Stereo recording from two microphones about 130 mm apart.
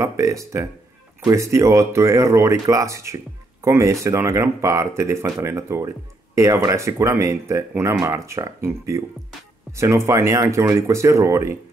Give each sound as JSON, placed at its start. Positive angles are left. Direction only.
{"t": 0.0, "sound": "speech", "side_deg": -25}